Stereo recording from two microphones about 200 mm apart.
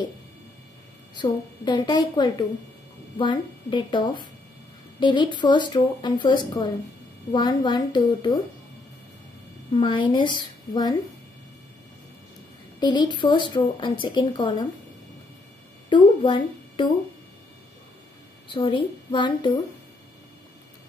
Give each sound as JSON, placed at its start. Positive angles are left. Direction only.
{"t": 1.1, "sound": "speech", "side_deg": 20}
{"t": 9.7, "sound": "speech", "side_deg": 25}
{"t": 12.8, "sound": "speech", "side_deg": 20}
{"t": 15.9, "sound": "speech", "side_deg": 25}
{"t": 18.5, "sound": "speech", "side_deg": 25}